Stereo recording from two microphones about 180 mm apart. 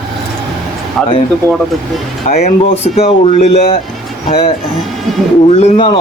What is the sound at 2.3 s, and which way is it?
Speech, 35° left (ahead or behind).